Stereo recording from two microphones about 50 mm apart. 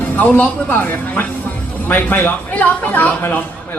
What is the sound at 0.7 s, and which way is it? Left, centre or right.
A woman's voice, left.